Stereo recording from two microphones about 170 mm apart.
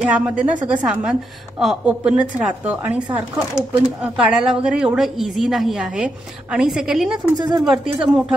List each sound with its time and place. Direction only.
0.0 s a woman's voice: 5° right (ahead or behind)
7.3 s speech: 25° right (ahead or behind)
7.6 s a woman's voice: centre (ahead or behind)